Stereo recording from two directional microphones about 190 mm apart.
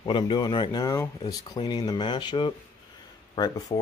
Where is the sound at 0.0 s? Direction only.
25° left (ahead or behind).